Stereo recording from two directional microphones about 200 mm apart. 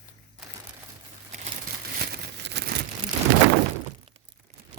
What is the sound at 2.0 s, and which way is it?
Crumpling, 50° right (ahead or behind).